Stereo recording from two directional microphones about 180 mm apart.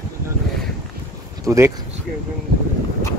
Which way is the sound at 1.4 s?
20° right (ahead or behind).